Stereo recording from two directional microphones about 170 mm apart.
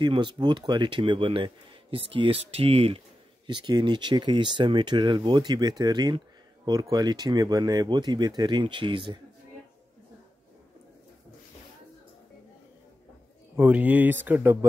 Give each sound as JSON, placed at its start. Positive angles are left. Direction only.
{"t": 0.0, "sound": "speech", "side_deg": -25}
{"t": 13.6, "sound": "speech", "side_deg": -10}